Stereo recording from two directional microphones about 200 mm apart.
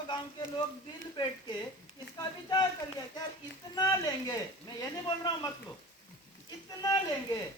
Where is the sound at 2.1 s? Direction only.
20° left (ahead or behind).